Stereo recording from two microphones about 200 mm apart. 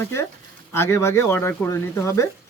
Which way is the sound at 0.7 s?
15° left (ahead or behind).